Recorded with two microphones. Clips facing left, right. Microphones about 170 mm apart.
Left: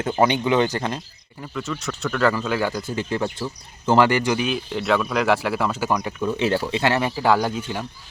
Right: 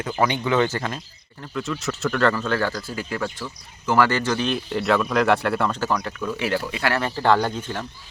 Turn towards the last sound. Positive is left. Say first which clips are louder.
# even
turn(degrees=10)  # may be behind; listen again after turning